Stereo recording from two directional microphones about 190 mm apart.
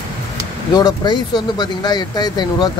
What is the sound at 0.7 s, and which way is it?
Speech, 20° left (ahead or behind).